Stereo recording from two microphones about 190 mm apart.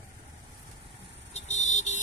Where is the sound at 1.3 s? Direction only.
35° left (ahead or behind).